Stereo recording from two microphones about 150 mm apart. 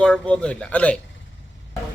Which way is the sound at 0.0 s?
5° left (ahead or behind).